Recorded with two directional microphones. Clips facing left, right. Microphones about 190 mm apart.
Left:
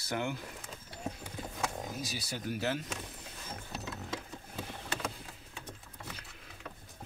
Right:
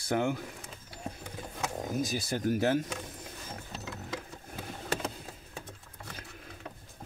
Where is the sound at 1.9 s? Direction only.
50° right (ahead or behind).